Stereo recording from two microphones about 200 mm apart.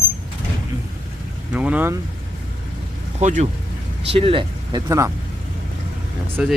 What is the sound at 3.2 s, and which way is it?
Speech, 35° right (ahead or behind).